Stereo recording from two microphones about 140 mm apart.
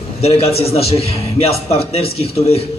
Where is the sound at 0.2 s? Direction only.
45° left (ahead or behind).